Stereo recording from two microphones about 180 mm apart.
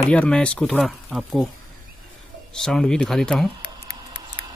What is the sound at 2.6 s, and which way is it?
Speech, centre (ahead or behind).